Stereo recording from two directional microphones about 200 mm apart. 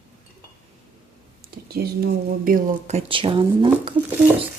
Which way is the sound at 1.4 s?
50° right (ahead or behind).